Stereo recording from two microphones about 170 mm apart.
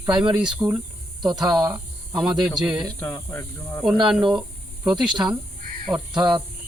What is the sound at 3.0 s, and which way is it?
Speech, 10° left (ahead or behind).